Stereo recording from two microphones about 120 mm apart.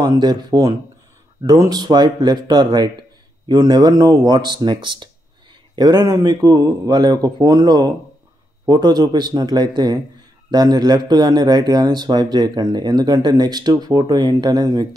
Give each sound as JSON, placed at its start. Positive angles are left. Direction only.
{"t": 0.0, "sound": "speech", "side_deg": -35}